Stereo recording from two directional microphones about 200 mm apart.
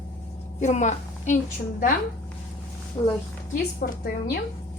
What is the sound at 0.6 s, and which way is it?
Speech, 35° left (ahead or behind).